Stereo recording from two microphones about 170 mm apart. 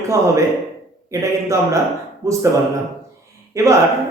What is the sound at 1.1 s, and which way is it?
Speech, 15° right (ahead or behind).